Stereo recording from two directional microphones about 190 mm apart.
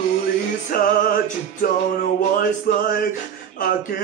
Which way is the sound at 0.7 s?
50° left (ahead or behind).